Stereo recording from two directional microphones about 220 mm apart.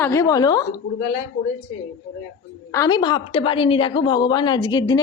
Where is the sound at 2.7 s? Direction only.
20° left (ahead or behind).